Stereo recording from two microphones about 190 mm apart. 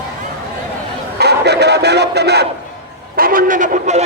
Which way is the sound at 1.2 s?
60° right (ahead or behind).